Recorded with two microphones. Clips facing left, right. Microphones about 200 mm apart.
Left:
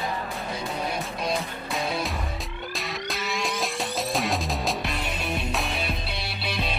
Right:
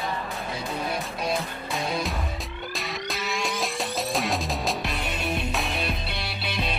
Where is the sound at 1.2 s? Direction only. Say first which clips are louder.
Even; centre (ahead or behind).